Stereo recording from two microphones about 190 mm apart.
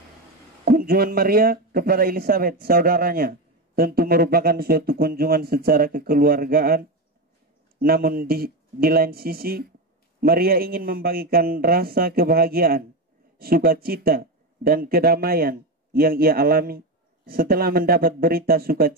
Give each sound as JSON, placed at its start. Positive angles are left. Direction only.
{"t": 0.7, "sound": "a man's voice", "side_deg": -50}